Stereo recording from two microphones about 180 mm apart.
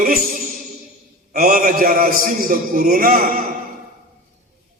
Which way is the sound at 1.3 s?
55° right (ahead or behind).